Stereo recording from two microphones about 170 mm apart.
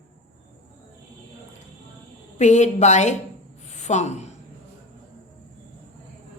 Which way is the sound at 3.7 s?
45° left (ahead or behind).